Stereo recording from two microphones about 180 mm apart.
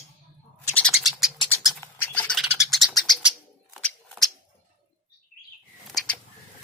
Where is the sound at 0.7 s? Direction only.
Centre (ahead or behind).